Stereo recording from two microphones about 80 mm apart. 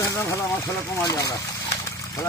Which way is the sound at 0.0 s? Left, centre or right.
Left.